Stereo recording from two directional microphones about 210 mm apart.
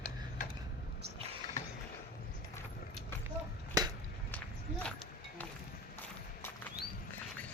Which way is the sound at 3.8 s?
20° right (ahead or behind).